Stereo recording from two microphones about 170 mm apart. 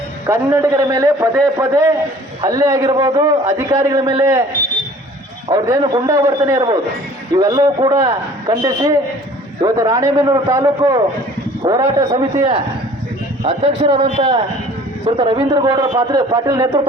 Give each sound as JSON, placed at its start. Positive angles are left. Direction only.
{"t": 0.3, "sound": "a man's voice", "side_deg": -20}
{"t": 5.5, "sound": "a man's voice", "side_deg": -25}